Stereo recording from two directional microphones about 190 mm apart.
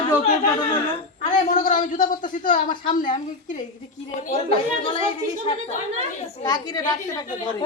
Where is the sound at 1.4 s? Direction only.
45° left (ahead or behind).